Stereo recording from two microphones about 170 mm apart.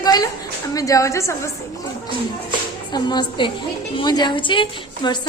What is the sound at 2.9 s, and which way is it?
A woman's voice, 25° left (ahead or behind).